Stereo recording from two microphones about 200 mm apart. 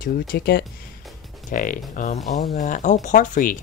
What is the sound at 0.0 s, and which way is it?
Speech, 50° left (ahead or behind).